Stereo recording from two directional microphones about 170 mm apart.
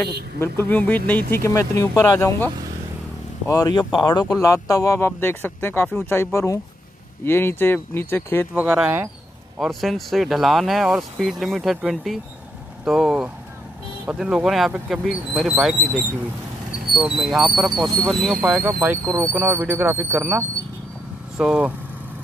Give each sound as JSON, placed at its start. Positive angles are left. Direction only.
{"t": 0.4, "sound": "speech", "side_deg": 10}
{"t": 8.5, "sound": "speech", "side_deg": -5}
{"t": 9.6, "sound": "speech", "side_deg": 0}
{"t": 16.9, "sound": "speech", "side_deg": 0}
{"t": 18.6, "sound": "speech", "side_deg": -10}